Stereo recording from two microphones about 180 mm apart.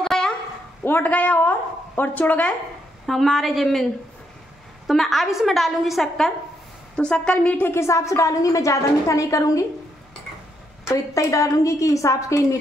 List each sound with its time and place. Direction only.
0.0 s dog: centre (ahead or behind)
0.8 s a woman's voice: 10° left (ahead or behind)
4.8 s a woman's voice: centre (ahead or behind); by 9.7 s 15° left (ahead or behind)
10.9 s a woman's voice: 15° left (ahead or behind)